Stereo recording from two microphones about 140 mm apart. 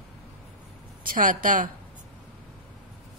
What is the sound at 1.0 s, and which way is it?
Speech, 80° right.